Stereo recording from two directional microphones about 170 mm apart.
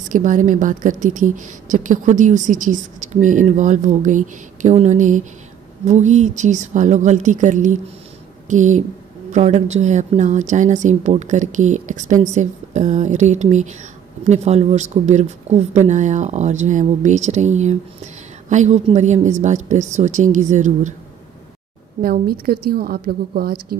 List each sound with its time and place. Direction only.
0.1 s a woman's voice: 50° right (ahead or behind)
22.0 s a woman's voice: 60° right (ahead or behind)